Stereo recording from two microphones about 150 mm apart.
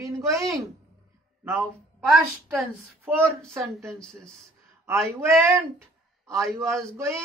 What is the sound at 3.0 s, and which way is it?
Speech, 15° right (ahead or behind).